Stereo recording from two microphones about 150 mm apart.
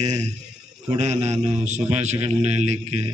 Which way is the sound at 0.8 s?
50° right (ahead or behind).